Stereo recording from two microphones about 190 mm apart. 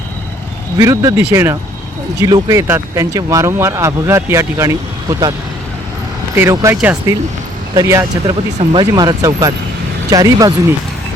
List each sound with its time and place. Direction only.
0.8 s speech: 15° right (ahead or behind)
6.3 s speech: 15° right (ahead or behind)